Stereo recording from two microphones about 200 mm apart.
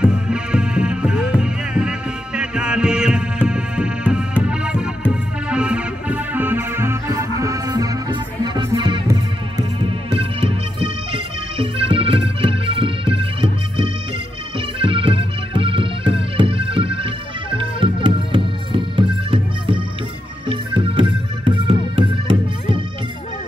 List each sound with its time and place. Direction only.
0.0 s music: 5° right (ahead or behind); by 22.8 s 25° right (ahead or behind)